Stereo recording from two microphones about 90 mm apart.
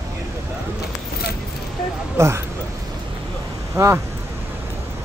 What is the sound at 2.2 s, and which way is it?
Speech, 30° right (ahead or behind).